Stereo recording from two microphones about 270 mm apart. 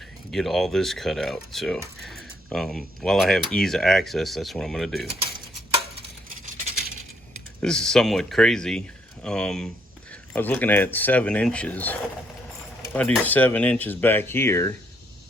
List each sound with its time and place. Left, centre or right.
0.3 s speech: centre
7.6 s speech: centre